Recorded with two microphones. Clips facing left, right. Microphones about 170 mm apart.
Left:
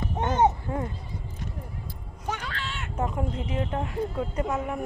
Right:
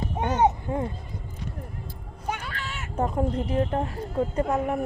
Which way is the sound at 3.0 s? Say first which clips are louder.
Right 4 dB; 35° right (ahead or behind).